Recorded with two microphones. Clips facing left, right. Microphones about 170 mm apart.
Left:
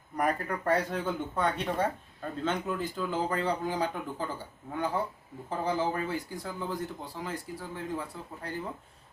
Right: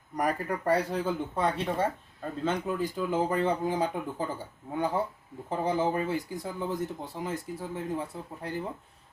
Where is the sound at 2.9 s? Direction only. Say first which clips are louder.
Right 4 dB; 15° right (ahead or behind).